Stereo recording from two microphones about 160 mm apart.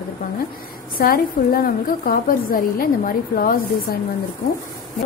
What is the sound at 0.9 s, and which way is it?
A woman's voice, 65° left (ahead or behind).